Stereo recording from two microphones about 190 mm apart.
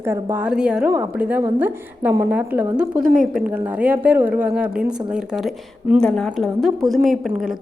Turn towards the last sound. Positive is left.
turn(degrees=0)  # may be behind; listen again after turning